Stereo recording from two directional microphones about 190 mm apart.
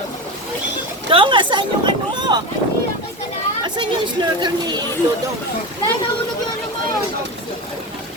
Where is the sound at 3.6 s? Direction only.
25° right (ahead or behind).